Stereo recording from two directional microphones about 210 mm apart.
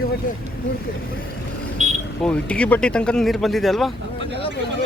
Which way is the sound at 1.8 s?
35° right (ahead or behind).